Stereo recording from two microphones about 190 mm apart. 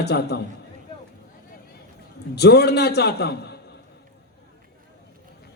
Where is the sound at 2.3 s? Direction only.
60° left (ahead or behind).